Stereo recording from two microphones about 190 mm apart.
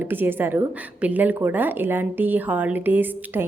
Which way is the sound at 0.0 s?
10° right (ahead or behind).